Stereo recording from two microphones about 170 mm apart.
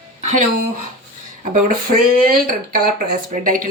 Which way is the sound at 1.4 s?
50° right (ahead or behind).